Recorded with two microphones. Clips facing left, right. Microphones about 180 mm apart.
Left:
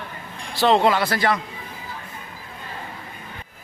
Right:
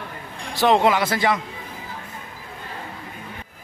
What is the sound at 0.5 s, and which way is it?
Speech, 15° right (ahead or behind).